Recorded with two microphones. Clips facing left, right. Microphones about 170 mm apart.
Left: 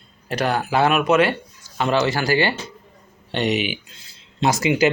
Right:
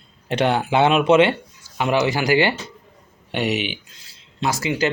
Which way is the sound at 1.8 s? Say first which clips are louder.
Even; 15° right (ahead or behind).